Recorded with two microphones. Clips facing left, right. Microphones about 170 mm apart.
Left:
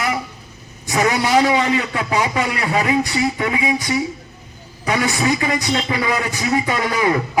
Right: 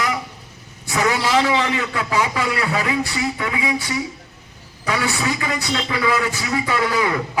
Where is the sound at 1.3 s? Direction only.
35° left (ahead or behind).